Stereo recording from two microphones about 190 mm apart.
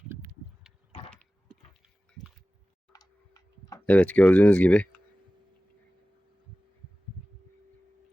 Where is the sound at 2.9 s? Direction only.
20° left (ahead or behind).